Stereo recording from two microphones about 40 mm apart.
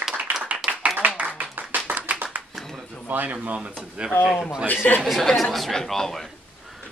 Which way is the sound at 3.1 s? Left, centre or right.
Right.